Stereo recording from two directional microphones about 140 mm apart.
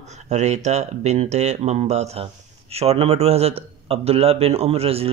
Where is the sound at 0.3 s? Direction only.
55° right (ahead or behind).